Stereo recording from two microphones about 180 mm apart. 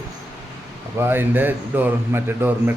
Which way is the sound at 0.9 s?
10° right (ahead or behind).